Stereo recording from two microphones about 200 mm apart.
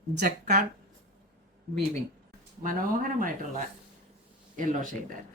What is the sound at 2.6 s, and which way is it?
Speech, 45° right (ahead or behind).